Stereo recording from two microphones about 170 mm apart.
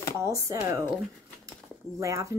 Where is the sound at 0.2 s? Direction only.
20° right (ahead or behind).